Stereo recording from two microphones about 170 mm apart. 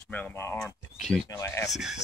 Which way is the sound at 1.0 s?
Centre (ahead or behind).